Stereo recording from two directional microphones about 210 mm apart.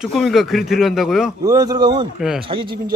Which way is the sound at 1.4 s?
20° right (ahead or behind).